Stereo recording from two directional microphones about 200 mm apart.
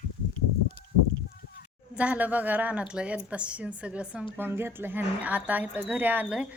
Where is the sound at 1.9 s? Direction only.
5° right (ahead or behind).